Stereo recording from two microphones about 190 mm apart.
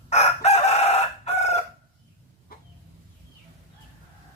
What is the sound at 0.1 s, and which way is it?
Chicken, 35° left (ahead or behind).